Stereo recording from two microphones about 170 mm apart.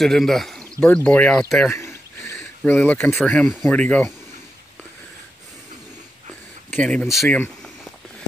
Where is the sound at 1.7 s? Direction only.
15° left (ahead or behind).